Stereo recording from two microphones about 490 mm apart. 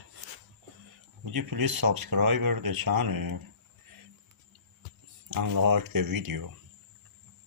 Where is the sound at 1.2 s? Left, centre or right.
Right.